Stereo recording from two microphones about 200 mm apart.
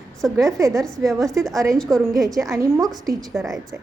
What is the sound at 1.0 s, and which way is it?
A woman's voice, centre (ahead or behind).